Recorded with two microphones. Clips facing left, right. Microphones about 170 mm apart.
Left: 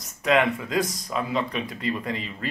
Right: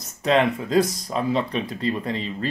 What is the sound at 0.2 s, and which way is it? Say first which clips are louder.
Speech: right 2 dB; 30° right (ahead or behind).